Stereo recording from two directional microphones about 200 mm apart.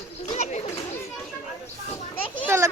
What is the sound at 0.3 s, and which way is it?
Children playing, 35° left (ahead or behind).